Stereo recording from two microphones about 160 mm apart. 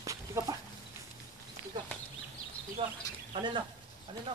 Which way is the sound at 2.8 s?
35° right (ahead or behind).